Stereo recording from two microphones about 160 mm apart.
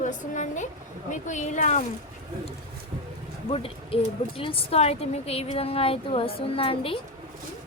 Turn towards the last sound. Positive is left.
turn(degrees=35)  # may be behind; listen again after turning